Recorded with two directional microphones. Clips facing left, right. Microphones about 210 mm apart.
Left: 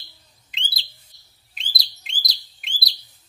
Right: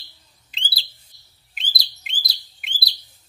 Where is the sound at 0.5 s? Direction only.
35° right (ahead or behind).